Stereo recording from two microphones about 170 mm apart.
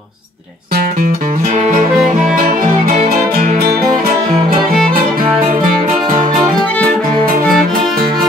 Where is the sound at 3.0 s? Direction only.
60° right (ahead or behind).